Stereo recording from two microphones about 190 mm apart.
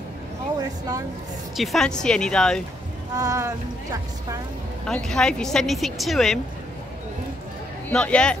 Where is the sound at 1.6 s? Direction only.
Centre (ahead or behind).